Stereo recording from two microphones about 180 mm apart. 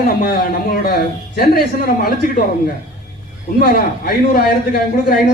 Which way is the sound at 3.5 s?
55° left (ahead or behind).